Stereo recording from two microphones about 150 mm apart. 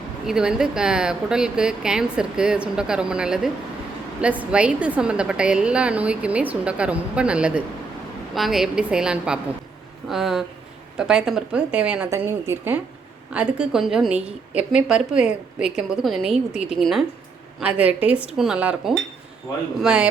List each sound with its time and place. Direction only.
0.3 s a woman's voice: 5° right (ahead or behind)
12.0 s a woman's voice: 20° right (ahead or behind)